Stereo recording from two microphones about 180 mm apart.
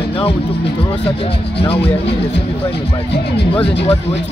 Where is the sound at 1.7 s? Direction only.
70° left (ahead or behind).